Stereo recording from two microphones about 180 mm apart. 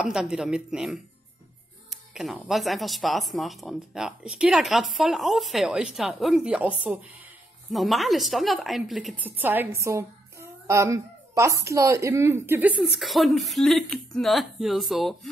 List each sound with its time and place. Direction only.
0.0 s a woman's voice: 5° right (ahead or behind)